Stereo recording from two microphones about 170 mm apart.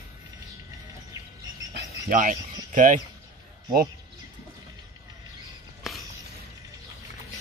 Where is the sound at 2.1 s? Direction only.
50° right (ahead or behind).